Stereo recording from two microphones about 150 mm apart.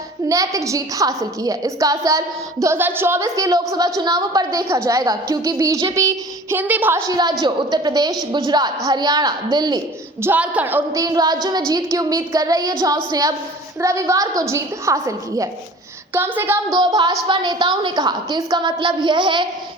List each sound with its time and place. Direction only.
0.3 s a woman's voice: 20° right (ahead or behind)
10.2 s a woman's voice: 15° right (ahead or behind)
11.0 s a woman's voice: 25° right (ahead or behind)
16.7 s a woman's voice: 30° right (ahead or behind)